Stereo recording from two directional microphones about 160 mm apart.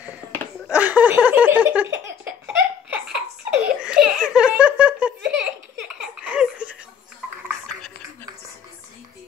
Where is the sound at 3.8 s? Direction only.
5° right (ahead or behind).